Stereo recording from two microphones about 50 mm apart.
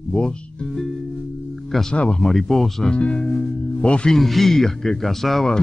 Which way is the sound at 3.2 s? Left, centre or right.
Centre.